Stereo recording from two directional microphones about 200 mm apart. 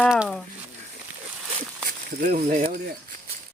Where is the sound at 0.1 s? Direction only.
Centre (ahead or behind).